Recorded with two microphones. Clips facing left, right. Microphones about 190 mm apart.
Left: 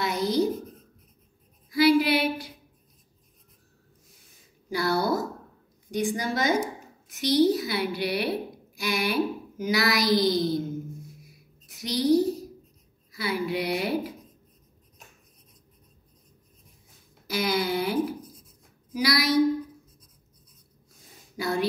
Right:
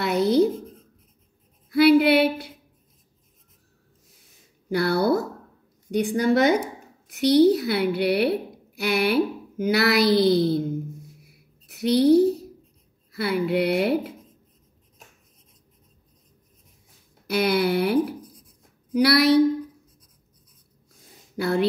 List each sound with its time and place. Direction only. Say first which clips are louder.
0.0 s a woman's voice: right 6 dB; 60° right (ahead or behind)
1.7 s a sound: right 5 dB; 60° right (ahead or behind)
4.6 s a woman's voice: right 4 dB; 60° right (ahead or behind)
11.6 s a woman's voice: right 7 dB; 60° right (ahead or behind)
17.3 s speech: right 5 dB; 65° right (ahead or behind)
21.4 s speech: right 5 dB; 60° right (ahead or behind)